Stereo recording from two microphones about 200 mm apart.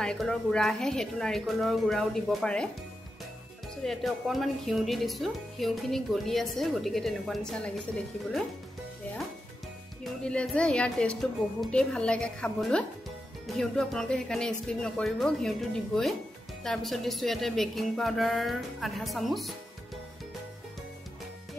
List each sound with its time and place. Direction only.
0.0 s a woman's voice: 5° left (ahead or behind)
3.8 s a woman's voice: centre (ahead or behind)
10.0 s a woman's voice: 5° left (ahead or behind)